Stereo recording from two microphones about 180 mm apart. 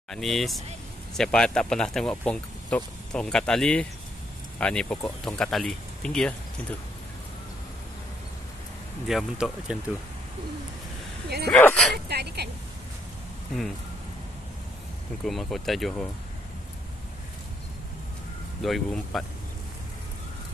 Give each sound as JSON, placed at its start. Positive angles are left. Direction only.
{"t": 0.1, "sound": "speech", "side_deg": 0}
{"t": 9.0, "sound": "speech", "side_deg": -5}
{"t": 11.5, "sound": "speech", "side_deg": 10}
{"t": 12.1, "sound": "a woman's voice", "side_deg": -65}
{"t": 15.2, "sound": "speech", "side_deg": 0}
{"t": 18.6, "sound": "speech", "side_deg": 0}